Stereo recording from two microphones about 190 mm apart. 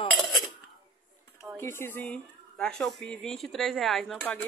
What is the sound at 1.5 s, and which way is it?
Speech, 10° left (ahead or behind).